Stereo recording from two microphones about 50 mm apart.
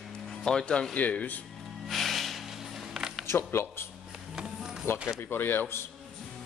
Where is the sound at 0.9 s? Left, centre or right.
Left.